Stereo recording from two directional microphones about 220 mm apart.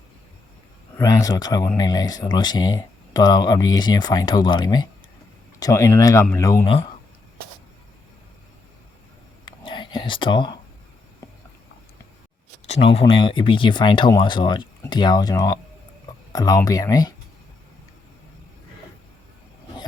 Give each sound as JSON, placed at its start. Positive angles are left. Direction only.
{"t": 0.9, "sound": "speech", "side_deg": 15}
{"t": 9.5, "sound": "whispering", "side_deg": 20}
{"t": 12.6, "sound": "speech", "side_deg": 30}